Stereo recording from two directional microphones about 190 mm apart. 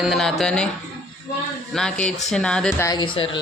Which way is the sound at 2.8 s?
20° left (ahead or behind).